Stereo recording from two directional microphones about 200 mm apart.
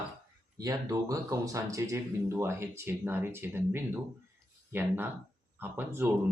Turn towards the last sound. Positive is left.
turn(degrees=-10)  # may be behind; listen again after turning